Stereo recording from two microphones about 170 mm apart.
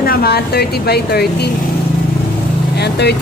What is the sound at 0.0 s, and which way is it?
A woman's voice, 65° left (ahead or behind).